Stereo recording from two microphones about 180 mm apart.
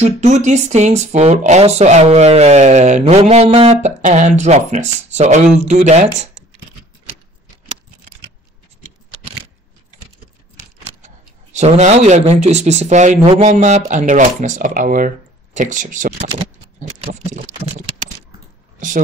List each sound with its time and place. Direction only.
0.0 s speech: 40° right (ahead or behind)
11.5 s speech: 40° right (ahead or behind)
17.3 s typing: 45° right (ahead or behind)